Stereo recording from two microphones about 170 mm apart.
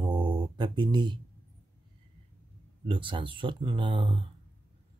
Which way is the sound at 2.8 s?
30° right (ahead or behind).